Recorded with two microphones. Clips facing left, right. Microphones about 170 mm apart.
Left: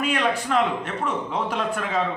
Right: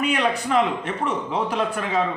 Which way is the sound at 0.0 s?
5° right (ahead or behind).